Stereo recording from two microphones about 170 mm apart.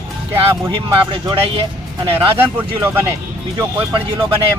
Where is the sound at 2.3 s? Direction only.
15° right (ahead or behind).